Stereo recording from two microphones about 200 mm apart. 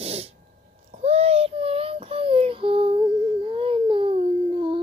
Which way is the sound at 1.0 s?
30° right (ahead or behind).